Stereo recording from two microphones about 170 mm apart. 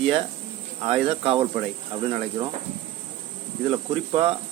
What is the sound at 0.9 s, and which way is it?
Speech, 30° right (ahead or behind).